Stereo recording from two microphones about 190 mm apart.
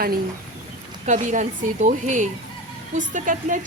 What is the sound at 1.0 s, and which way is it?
A woman's voice, 40° right (ahead or behind).